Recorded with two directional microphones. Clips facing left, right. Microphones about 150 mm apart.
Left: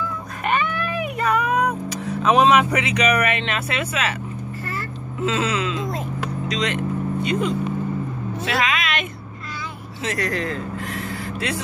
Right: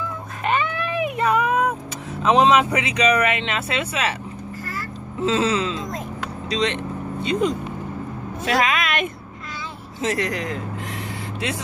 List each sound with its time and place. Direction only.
0.5 s vehicle: 25° right (ahead or behind)
5.2 s a sound: 35° right (ahead or behind)
5.8 s vehicle: 10° left (ahead or behind)
6.4 s speech: 30° right (ahead or behind)
8.5 s a woman's voice: 45° right (ahead or behind)
10.1 s speech: 15° right (ahead or behind)